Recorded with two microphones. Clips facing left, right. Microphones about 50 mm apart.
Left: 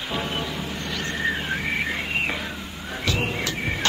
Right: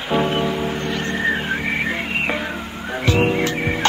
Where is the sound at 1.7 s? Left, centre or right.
Centre.